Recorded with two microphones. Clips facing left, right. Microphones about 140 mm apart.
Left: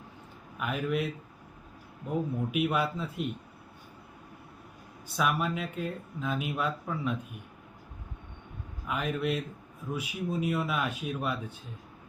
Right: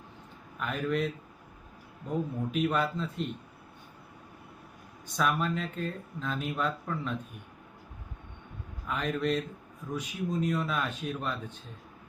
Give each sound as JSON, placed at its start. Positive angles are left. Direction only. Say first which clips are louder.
{"t": 0.6, "sound": "speech", "louder": "even", "side_deg": 10}
{"t": 5.0, "sound": "speech", "louder": "even", "side_deg": 5}
{"t": 8.9, "sound": "speech", "louder": "right 1 dB", "side_deg": 5}